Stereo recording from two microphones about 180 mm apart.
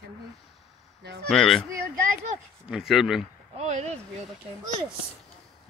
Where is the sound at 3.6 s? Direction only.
40° right (ahead or behind).